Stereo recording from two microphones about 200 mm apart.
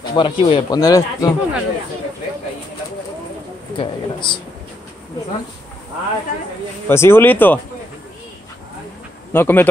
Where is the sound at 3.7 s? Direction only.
25° left (ahead or behind).